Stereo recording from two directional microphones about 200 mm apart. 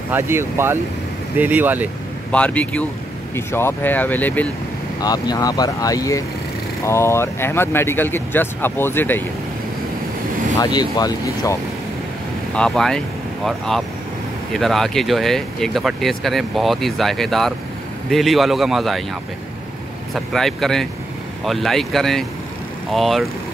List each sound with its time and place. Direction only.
0.1 s speech: 10° right (ahead or behind)
2.3 s speech: 5° left (ahead or behind)
5.0 s speech: 20° left (ahead or behind)
10.6 s speech: 20° left (ahead or behind)
12.5 s speech: 5° left (ahead or behind)
20.3 s speech: centre (ahead or behind)